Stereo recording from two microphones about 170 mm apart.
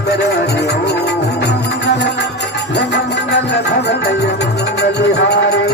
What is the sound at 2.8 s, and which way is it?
Music, 90° left.